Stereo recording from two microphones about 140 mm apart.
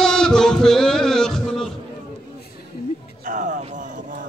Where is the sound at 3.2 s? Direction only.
65° right (ahead or behind).